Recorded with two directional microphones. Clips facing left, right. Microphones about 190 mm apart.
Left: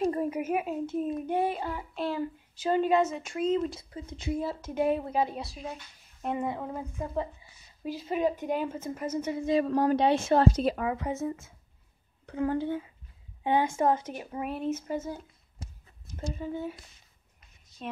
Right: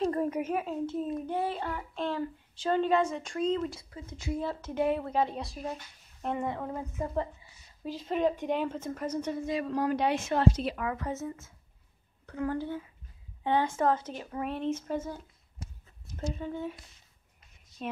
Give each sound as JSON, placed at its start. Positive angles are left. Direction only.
{"t": 0.0, "sound": "a child's voice", "side_deg": 10}
{"t": 3.5, "sound": "a child's voice", "side_deg": 20}
{"t": 7.8, "sound": "a woman's voice", "side_deg": 10}
{"t": 9.8, "sound": "speech", "side_deg": 30}
{"t": 10.9, "sound": "a child's voice", "side_deg": 15}
{"t": 12.3, "sound": "a child's voice", "side_deg": 20}
{"t": 16.2, "sound": "a woman's voice", "side_deg": 5}